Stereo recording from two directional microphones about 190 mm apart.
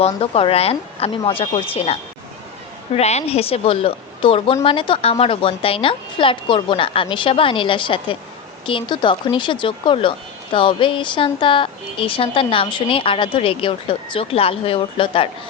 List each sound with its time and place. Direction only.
0.0 s speech: 30° left (ahead or behind)